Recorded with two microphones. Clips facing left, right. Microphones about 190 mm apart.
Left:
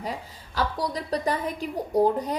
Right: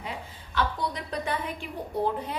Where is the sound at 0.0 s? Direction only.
40° left (ahead or behind).